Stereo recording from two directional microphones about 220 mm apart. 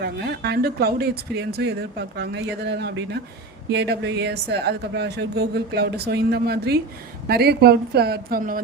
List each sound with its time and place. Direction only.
0.0 s speech: 50° right (ahead or behind)